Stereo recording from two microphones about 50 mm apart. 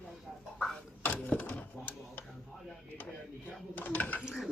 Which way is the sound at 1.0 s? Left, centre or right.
Left.